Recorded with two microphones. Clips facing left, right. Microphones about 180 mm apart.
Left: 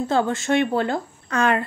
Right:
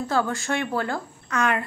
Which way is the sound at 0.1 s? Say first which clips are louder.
Left 5 dB; 25° left (ahead or behind).